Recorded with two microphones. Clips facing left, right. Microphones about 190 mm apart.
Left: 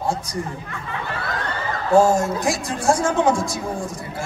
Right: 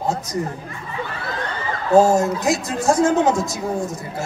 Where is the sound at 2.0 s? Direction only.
20° right (ahead or behind).